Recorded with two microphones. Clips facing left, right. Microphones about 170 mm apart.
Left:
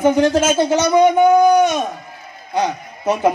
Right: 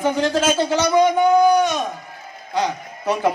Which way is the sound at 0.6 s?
20° left (ahead or behind).